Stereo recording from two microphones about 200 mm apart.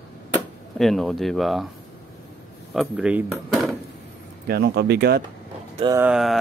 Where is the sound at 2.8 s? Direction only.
5° right (ahead or behind).